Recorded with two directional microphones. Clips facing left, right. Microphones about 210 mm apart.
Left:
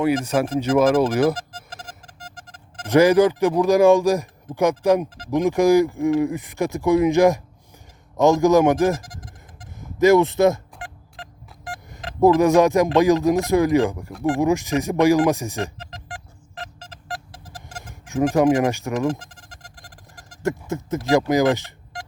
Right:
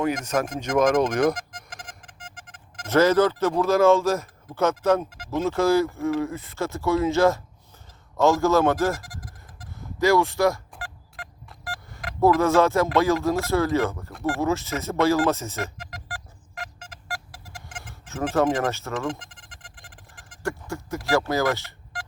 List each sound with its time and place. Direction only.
0.6 s speech: 5° left (ahead or behind)
1.4 s a sound: 35° left (ahead or behind)
2.8 s speech: 15° left (ahead or behind)
8.1 s bleat: 15° left (ahead or behind)
14.3 s speech: 15° left (ahead or behind)
15.6 s music: 30° left (ahead or behind)
18.0 s a sound: 15° left (ahead or behind)
18.3 s speech: 15° left (ahead or behind)
18.9 s a sound: 40° left (ahead or behind)
20.4 s speech: 20° left (ahead or behind)